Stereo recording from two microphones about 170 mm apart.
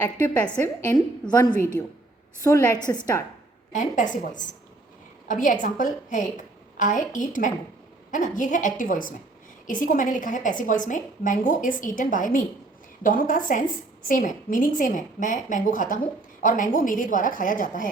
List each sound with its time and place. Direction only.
0.0 s a woman's voice: 10° left (ahead or behind)
2.4 s a woman's voice: 15° left (ahead or behind)
3.7 s a woman's voice: 50° left (ahead or behind)